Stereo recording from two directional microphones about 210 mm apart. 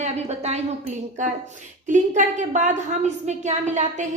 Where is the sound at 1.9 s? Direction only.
35° right (ahead or behind).